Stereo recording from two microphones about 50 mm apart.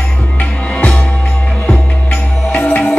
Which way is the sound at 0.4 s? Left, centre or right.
Left.